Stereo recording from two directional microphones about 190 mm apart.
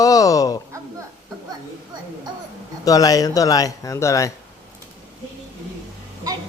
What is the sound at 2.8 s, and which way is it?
Speech, 20° left (ahead or behind).